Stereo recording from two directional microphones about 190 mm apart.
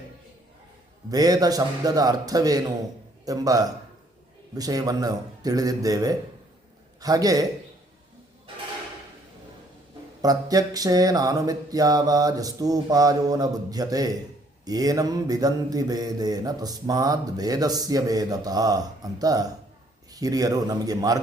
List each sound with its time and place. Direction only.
1.1 s mantra: 20° right (ahead or behind)
10.2 s mantra: 20° right (ahead or behind)